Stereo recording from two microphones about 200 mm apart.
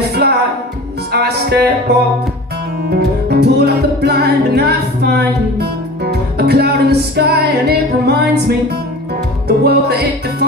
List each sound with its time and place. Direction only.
0.2 s music: 55° right (ahead or behind)